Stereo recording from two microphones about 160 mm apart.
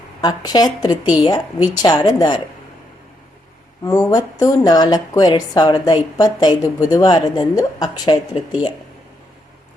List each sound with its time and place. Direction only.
0.2 s a woman's voice: 25° left (ahead or behind)
3.8 s a woman's voice: 20° left (ahead or behind)